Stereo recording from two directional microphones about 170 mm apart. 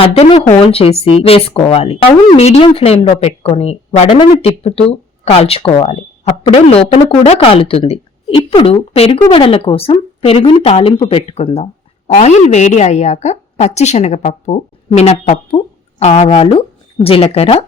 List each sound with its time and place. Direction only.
0.0 s speech: 35° left (ahead or behind)